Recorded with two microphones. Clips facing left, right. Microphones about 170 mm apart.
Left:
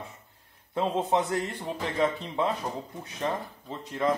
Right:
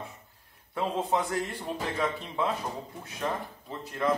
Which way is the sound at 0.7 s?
20° left (ahead or behind).